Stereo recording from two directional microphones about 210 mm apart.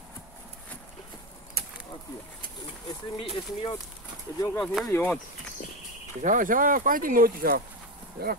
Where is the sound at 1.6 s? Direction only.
50° right (ahead or behind).